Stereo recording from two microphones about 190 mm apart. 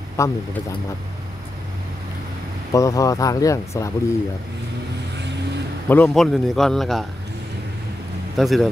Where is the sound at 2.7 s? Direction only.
15° left (ahead or behind).